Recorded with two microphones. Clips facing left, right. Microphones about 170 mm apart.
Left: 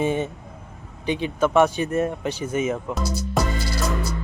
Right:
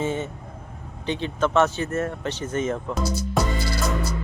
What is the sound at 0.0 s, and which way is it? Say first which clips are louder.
Vehicle: left 3 dB; 15° left (ahead or behind).